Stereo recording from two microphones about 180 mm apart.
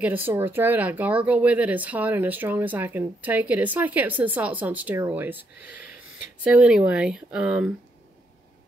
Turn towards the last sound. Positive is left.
turn(degrees=-5)  # may be behind; listen again after turning